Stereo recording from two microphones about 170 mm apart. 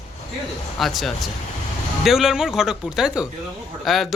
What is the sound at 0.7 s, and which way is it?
Speech, centre (ahead or behind).